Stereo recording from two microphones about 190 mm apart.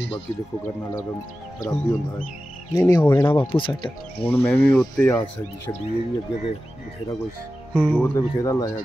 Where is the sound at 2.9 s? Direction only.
10° left (ahead or behind).